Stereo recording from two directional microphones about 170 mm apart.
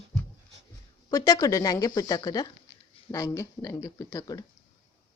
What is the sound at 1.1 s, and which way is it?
A woman's voice, 20° left (ahead or behind).